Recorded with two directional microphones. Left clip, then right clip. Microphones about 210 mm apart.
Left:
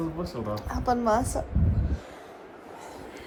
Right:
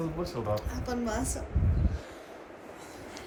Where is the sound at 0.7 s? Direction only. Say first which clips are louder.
Left 9 dB; 35° left (ahead or behind).